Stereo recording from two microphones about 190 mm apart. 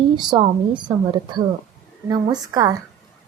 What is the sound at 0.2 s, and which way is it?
A woman's voice, 25° right (ahead or behind).